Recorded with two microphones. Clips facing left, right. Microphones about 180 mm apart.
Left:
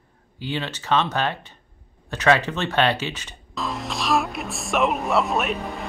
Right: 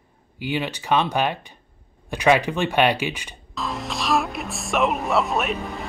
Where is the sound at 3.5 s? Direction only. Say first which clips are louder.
Even; centre (ahead or behind).